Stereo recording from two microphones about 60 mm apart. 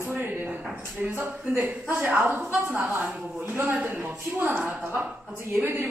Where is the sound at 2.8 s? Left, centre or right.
Right.